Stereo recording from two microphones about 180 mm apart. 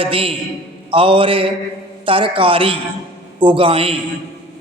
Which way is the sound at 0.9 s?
30° right (ahead or behind).